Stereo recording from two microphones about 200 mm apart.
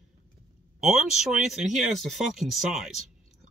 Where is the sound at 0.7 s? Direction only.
Centre (ahead or behind).